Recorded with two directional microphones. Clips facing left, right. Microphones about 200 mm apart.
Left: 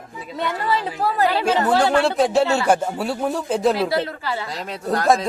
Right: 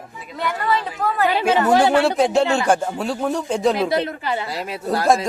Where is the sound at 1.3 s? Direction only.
15° right (ahead or behind); by 2.4 s centre (ahead or behind).